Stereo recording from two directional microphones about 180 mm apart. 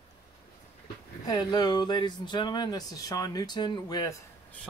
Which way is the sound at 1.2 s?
20° left (ahead or behind).